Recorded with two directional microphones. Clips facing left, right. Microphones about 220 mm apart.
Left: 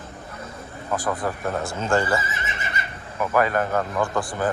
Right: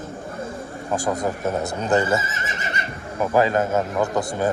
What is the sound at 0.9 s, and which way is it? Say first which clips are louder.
Speech: right 2 dB; 30° right (ahead or behind).